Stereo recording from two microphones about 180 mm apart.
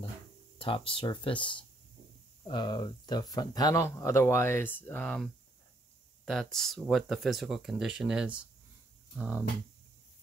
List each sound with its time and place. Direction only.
0.6 s speech: 30° left (ahead or behind); by 8.5 s 5° right (ahead or behind)